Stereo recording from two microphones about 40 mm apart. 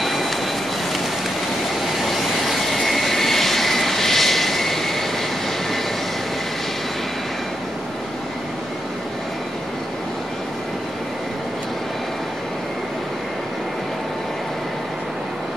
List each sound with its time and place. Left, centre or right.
0.0 s vehicle: centre
2.0 s vehicle: centre